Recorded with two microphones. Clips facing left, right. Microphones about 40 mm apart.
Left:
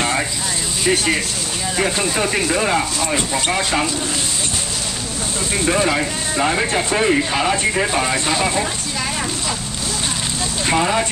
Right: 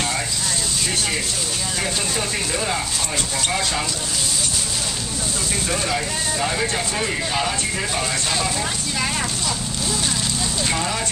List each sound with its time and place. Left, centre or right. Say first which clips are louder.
2.1 s speech: left 6 dB; left
5.7 s speech: left 7 dB; left
10.7 s speech: left 10 dB; left